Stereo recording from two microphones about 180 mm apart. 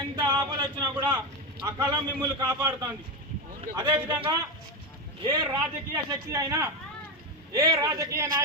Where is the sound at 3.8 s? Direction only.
25° right (ahead or behind).